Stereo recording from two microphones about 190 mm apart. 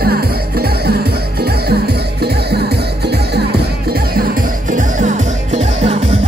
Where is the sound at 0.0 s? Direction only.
55° right (ahead or behind).